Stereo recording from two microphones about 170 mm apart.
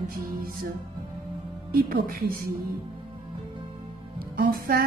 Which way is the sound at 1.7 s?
60° right (ahead or behind).